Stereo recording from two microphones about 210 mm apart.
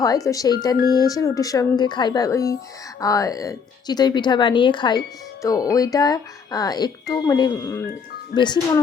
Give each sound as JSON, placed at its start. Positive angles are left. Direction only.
{"t": 0.3, "sound": "speech", "side_deg": 15}